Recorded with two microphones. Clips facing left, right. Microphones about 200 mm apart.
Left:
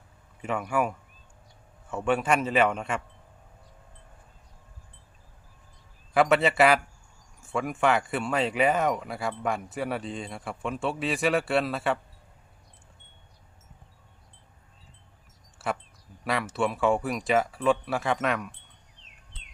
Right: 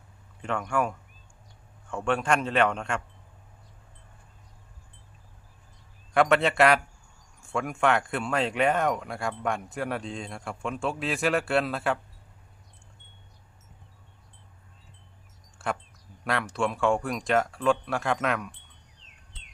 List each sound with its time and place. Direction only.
0.4 s speech: 5° left (ahead or behind)
6.1 s speech: centre (ahead or behind)
15.5 s a sound: 5° left (ahead or behind)
16.2 s speech: centre (ahead or behind)